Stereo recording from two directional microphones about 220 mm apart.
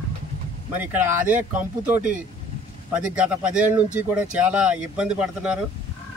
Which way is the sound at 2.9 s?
5° right (ahead or behind).